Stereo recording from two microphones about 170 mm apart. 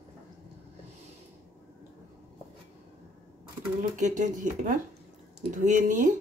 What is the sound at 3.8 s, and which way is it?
Speech, 45° right (ahead or behind).